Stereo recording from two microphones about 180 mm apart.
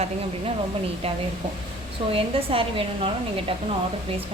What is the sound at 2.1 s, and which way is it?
A woman's voice, 30° right (ahead or behind).